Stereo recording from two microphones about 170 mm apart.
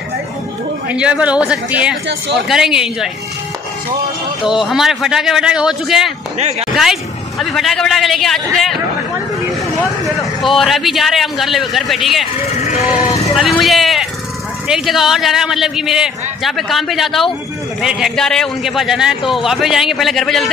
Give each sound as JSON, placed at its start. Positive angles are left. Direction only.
{"t": 0.8, "sound": "speech", "side_deg": -5}
{"t": 2.0, "sound": "speech", "side_deg": -90}
{"t": 2.4, "sound": "a man's voice", "side_deg": 0}
{"t": 4.5, "sound": "a man's voice", "side_deg": 0}
{"t": 10.5, "sound": "a man's voice", "side_deg": 0}
{"t": 12.6, "sound": "vehicle", "side_deg": 40}
{"t": 13.4, "sound": "a man's voice", "side_deg": 0}